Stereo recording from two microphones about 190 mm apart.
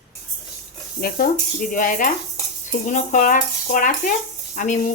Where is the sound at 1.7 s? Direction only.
45° left (ahead or behind).